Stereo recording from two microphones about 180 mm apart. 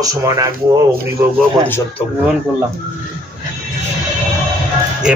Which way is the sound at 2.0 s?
35° left (ahead or behind).